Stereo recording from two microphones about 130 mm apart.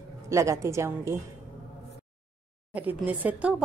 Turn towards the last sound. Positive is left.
turn(degrees=-10)  # may be behind; listen again after turning